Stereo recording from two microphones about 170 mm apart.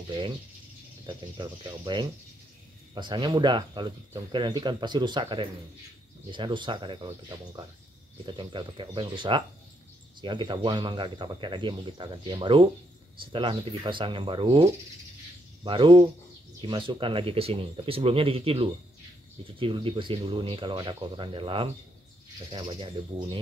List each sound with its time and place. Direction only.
1.0 s speech: 25° right (ahead or behind)